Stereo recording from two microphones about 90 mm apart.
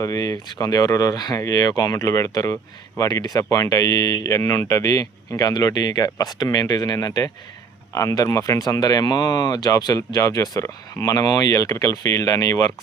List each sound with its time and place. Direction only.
0.0 s speech: 45° left (ahead or behind)